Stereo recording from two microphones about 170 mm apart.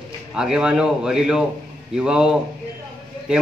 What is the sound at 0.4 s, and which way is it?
A man's voice, 5° right (ahead or behind).